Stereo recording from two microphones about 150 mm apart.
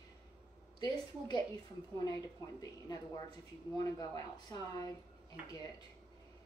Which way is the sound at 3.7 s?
25° left (ahead or behind).